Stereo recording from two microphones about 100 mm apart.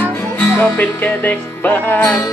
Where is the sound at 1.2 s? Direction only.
15° left (ahead or behind).